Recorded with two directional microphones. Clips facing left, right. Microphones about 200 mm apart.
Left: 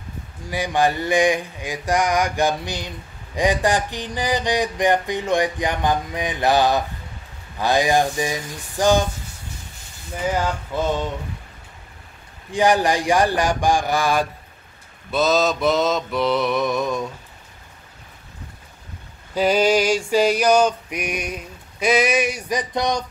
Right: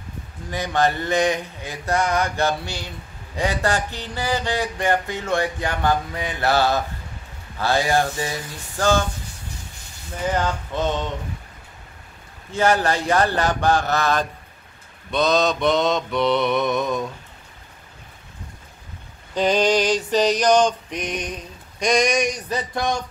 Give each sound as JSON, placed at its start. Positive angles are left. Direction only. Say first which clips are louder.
{"t": 0.5, "sound": "male singing", "louder": "left 1 dB", "side_deg": 10}
{"t": 10.3, "sound": "male singing", "louder": "right 1 dB", "side_deg": 10}
{"t": 12.4, "sound": "male singing", "louder": "left 2 dB", "side_deg": 15}
{"t": 15.0, "sound": "mantra", "louder": "left 1 dB", "side_deg": 5}
{"t": 19.3, "sound": "male singing", "louder": "left 1 dB", "side_deg": 10}